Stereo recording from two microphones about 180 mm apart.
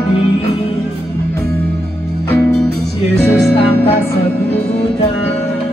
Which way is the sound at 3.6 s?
30° left (ahead or behind).